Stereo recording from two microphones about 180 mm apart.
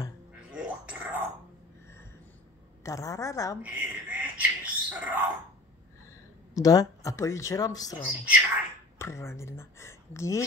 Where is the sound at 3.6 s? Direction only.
10° right (ahead or behind).